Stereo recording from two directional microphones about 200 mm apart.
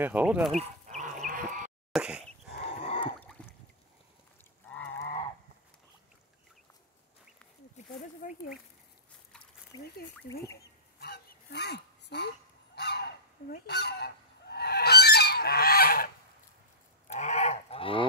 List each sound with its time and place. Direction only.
0.0 s speech: 5° right (ahead or behind)
0.6 s livestock: 35° right (ahead or behind)
1.2 s chicken: 40° right (ahead or behind)
1.9 s speech: 5° right (ahead or behind)
2.8 s a sound: 30° left (ahead or behind)
3.2 s a sound: 5° left (ahead or behind)
7.8 s a sound: 35° left (ahead or behind)
8.2 s speech: 40° left (ahead or behind)
9.7 s speech: 20° left (ahead or behind)
11.0 s a sound: 55° left (ahead or behind)
13.7 s goose: 55° left (ahead or behind)
17.1 s goose: 35° left (ahead or behind)